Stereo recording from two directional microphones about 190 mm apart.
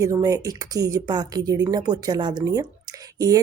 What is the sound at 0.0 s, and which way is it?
Speech, 15° right (ahead or behind).